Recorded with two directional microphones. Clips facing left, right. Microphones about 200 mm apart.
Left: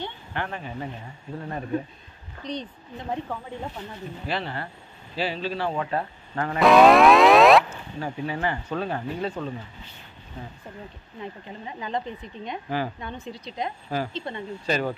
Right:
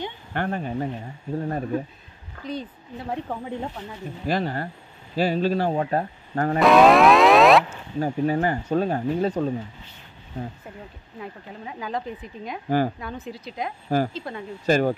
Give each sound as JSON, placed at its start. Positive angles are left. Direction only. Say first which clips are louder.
{"t": 0.3, "sound": "a man's voice", "louder": "right 7 dB", "side_deg": -45}
{"t": 2.4, "sound": "speech", "louder": "right 1 dB", "side_deg": -5}
{"t": 4.3, "sound": "a man's voice", "louder": "right 6 dB", "side_deg": -45}
{"t": 6.6, "sound": "music", "louder": "even", "side_deg": 0}
{"t": 8.0, "sound": "a man's voice", "louder": "right 6 dB", "side_deg": -45}
{"t": 11.1, "sound": "speech", "louder": "even", "side_deg": -5}
{"t": 12.6, "sound": "speech", "louder": "right 7 dB", "side_deg": -40}
{"t": 13.0, "sound": "speech", "louder": "right 2 dB", "side_deg": -5}
{"t": 13.8, "sound": "speech", "louder": "right 9 dB", "side_deg": -45}
{"t": 14.1, "sound": "speech", "louder": "even", "side_deg": 0}
{"t": 14.7, "sound": "speech", "louder": "right 6 dB", "side_deg": -45}